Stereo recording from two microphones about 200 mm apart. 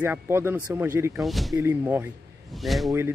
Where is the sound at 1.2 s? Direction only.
Centre (ahead or behind).